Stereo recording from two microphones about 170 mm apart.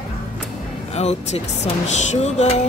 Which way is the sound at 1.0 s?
40° left (ahead or behind).